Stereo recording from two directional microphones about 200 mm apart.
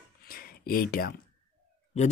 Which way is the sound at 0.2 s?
50° left (ahead or behind).